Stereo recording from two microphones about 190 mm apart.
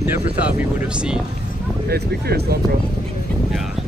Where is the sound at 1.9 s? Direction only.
55° right (ahead or behind).